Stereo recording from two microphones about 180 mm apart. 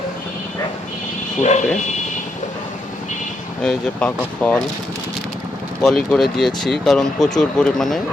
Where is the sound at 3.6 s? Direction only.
5° left (ahead or behind).